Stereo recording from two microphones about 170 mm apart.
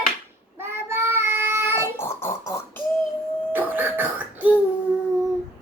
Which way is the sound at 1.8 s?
15° left (ahead or behind).